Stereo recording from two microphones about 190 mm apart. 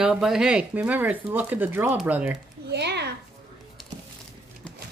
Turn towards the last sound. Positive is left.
turn(degrees=-60)  # may be behind; listen again after turning